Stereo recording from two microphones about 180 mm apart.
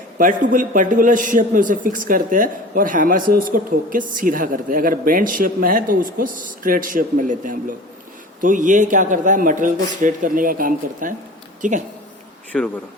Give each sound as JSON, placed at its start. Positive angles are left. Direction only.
{"t": 0.2, "sound": "a man's voice", "side_deg": -45}
{"t": 12.5, "sound": "a man's voice", "side_deg": 5}